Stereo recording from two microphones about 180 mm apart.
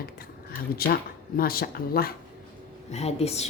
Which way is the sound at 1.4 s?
55° left (ahead or behind).